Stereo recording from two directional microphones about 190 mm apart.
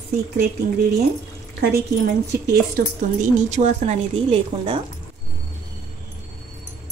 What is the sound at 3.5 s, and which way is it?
Speech, 40° right (ahead or behind).